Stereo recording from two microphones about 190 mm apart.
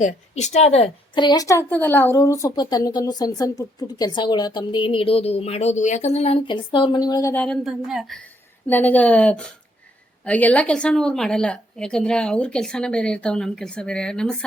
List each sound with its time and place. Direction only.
0.0 s a woman's voice: 35° left (ahead or behind); by 7.4 s 15° left (ahead or behind)
7.4 s a woman's voice: centre (ahead or behind)